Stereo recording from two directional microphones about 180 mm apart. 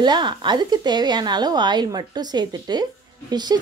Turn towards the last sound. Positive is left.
turn(degrees=-20)  # may be behind; listen again after turning